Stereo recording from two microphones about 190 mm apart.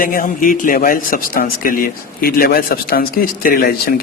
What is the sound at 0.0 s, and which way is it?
A man's voice, 45° left (ahead or behind).